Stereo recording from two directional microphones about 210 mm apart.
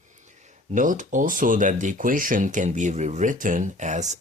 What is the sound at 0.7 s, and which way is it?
Speech, 40° right (ahead or behind).